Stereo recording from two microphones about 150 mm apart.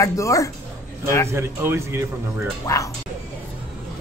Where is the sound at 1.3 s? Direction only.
15° right (ahead or behind).